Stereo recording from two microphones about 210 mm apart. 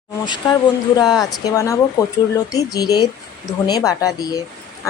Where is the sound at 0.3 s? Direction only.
20° left (ahead or behind).